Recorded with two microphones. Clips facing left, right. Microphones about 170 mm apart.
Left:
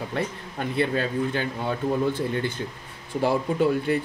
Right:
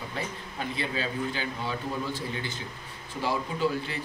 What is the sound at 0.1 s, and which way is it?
A man's voice, 55° left (ahead or behind).